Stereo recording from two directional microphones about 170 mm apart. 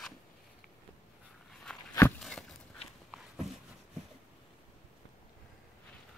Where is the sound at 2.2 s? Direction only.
5° left (ahead or behind).